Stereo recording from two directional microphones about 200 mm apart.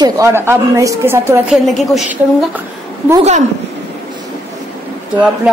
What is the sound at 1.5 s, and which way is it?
Speech, centre (ahead or behind).